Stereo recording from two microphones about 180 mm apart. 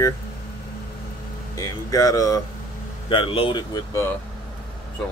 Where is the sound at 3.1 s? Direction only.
30° left (ahead or behind).